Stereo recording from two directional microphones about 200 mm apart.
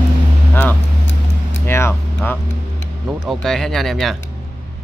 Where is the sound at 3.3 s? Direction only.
Centre (ahead or behind).